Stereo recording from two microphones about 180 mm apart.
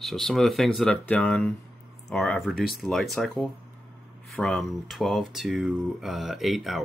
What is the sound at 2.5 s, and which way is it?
Speech, 55° left (ahead or behind).